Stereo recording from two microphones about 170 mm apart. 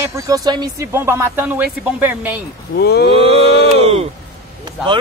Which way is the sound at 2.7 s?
70° left (ahead or behind).